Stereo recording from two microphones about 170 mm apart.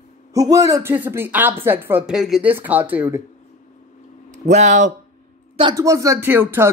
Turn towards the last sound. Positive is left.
turn(degrees=-15)  # may be behind; listen again after turning